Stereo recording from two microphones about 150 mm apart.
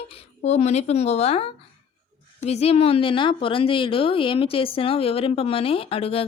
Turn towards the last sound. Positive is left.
turn(degrees=40)  # may be behind; listen again after turning